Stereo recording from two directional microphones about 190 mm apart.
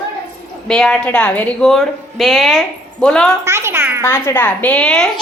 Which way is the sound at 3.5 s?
15° right (ahead or behind).